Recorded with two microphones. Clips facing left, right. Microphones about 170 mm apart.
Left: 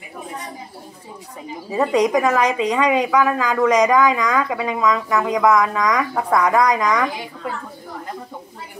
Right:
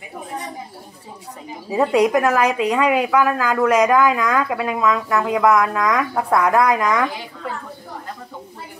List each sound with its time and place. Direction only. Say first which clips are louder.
1.7 s a woman's voice: right 1 dB; 5° right (ahead or behind)